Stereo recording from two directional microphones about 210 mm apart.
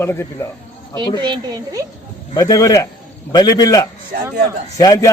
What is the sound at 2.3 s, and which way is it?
A man's voice, 15° left (ahead or behind).